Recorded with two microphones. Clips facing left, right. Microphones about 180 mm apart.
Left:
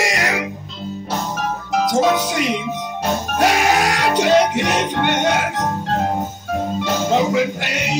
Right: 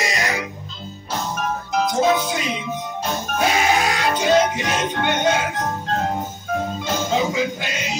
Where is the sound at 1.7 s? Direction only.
80° left.